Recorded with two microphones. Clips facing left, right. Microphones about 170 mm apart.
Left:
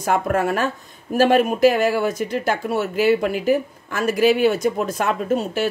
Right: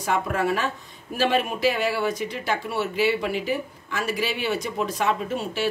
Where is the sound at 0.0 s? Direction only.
50° left (ahead or behind).